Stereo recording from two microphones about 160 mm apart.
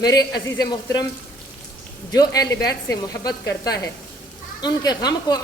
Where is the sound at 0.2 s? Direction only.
20° left (ahead or behind).